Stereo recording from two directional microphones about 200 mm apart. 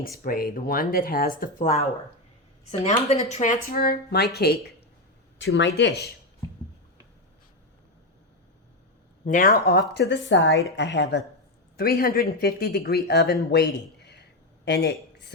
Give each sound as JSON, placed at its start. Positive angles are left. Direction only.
{"t": 0.0, "sound": "speech", "side_deg": 45}
{"t": 2.8, "sound": "speech", "side_deg": 35}
{"t": 9.2, "sound": "speech", "side_deg": 45}
{"t": 11.8, "sound": "speech", "side_deg": 50}